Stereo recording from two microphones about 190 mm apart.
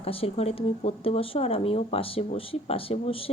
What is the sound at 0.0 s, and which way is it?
Speech, 30° left (ahead or behind).